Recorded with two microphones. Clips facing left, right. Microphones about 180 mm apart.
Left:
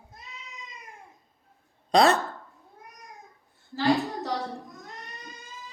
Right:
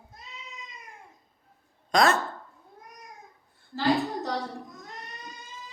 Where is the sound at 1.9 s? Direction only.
35° left (ahead or behind).